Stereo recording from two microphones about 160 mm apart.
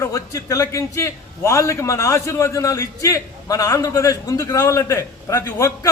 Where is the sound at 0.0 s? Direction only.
20° left (ahead or behind).